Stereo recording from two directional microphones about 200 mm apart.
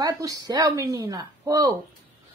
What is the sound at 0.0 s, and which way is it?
A woman's voice, 20° right (ahead or behind).